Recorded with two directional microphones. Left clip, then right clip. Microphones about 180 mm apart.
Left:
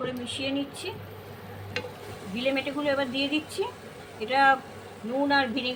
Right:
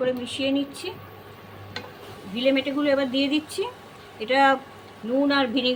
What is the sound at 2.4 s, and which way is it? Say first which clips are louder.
Speech: right 5 dB; 55° right (ahead or behind).